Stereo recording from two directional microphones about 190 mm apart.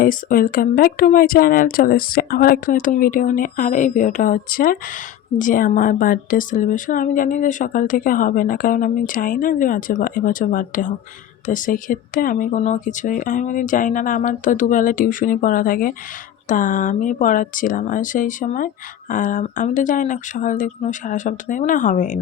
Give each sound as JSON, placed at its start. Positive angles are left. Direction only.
{"t": 0.0, "sound": "speech", "side_deg": 45}